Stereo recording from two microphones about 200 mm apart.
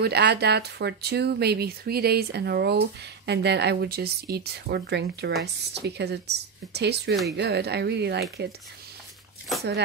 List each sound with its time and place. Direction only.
0.0 s speech: 55° right (ahead or behind)